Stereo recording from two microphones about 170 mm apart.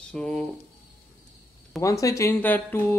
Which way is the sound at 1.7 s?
20° left (ahead or behind).